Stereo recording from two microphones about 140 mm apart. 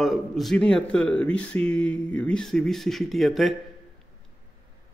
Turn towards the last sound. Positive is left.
turn(degrees=0)  # may be behind; listen again after turning